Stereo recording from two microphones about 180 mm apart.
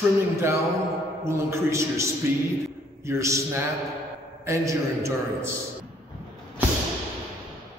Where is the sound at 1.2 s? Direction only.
15° right (ahead or behind).